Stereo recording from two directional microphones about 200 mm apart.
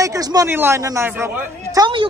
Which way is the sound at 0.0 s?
20° right (ahead or behind).